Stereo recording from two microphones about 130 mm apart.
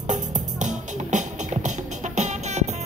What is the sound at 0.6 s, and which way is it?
Music, 70° right (ahead or behind).